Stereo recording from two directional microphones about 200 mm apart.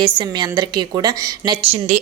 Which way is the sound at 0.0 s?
25° right (ahead or behind).